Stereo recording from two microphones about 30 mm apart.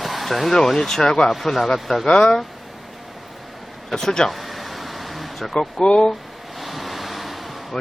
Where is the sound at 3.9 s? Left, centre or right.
Centre.